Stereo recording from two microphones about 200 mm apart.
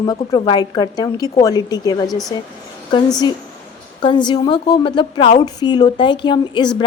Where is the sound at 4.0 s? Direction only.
20° left (ahead or behind).